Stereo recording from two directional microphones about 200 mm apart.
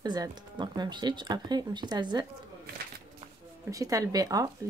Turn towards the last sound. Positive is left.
turn(degrees=-20)  # may be behind; listen again after turning